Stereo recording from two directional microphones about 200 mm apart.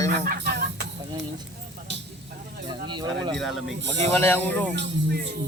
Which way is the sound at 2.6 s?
25° right (ahead or behind).